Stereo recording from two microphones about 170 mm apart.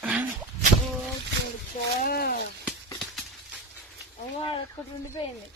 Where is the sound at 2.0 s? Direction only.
65° left (ahead or behind).